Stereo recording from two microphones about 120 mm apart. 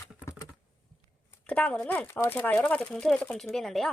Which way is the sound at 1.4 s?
10° left (ahead or behind).